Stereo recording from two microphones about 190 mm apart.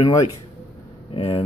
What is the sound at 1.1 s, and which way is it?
Speech, 30° left (ahead or behind).